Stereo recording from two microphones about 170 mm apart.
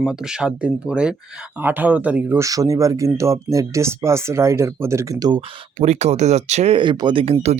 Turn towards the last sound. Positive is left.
turn(degrees=-40)  # may be behind; listen again after turning